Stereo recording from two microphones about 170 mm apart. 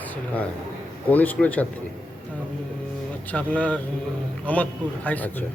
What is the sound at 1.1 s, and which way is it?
Speech, 10° left (ahead or behind).